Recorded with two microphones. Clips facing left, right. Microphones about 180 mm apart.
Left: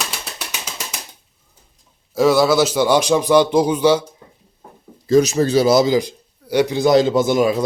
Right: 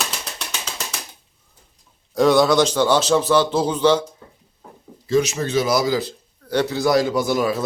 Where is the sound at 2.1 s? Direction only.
Centre (ahead or behind).